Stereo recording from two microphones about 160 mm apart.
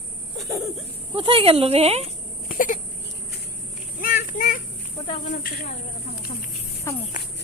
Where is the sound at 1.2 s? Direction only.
35° right (ahead or behind).